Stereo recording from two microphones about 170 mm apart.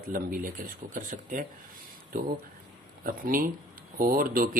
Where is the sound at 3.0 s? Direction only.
55° right (ahead or behind).